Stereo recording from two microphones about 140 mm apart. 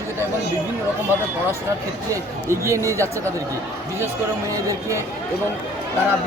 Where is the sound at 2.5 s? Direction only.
20° right (ahead or behind).